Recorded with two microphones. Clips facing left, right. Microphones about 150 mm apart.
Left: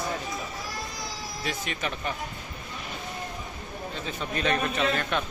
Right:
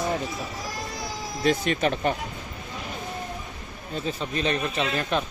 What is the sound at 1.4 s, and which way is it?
Speech, 40° right (ahead or behind).